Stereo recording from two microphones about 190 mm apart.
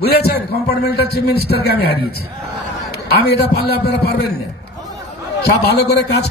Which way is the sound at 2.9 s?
60° left (ahead or behind).